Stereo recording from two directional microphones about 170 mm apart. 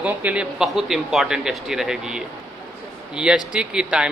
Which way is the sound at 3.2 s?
5° right (ahead or behind).